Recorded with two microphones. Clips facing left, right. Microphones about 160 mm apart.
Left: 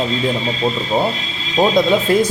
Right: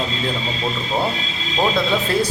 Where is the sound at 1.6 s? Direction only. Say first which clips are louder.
Left 6 dB; 15° left (ahead or behind).